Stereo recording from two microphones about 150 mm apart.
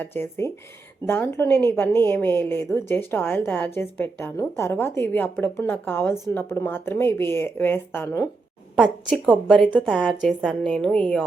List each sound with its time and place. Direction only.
0.0 s a woman's voice: 15° left (ahead or behind)
8.7 s a woman's voice: 5° right (ahead or behind)